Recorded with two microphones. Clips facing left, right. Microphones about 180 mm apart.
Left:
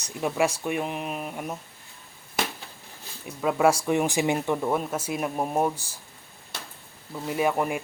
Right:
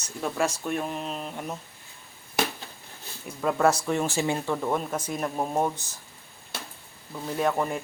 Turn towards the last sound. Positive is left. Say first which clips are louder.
# left 1 dB
turn(degrees=10)  # may be behind; listen again after turning